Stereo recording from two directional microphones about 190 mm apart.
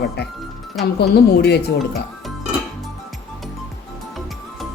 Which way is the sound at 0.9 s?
60° left (ahead or behind).